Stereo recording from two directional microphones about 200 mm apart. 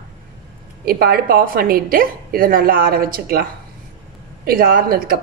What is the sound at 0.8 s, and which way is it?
A woman's voice, 50° right (ahead or behind).